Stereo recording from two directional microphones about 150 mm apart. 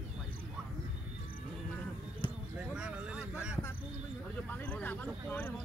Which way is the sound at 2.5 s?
5° right (ahead or behind).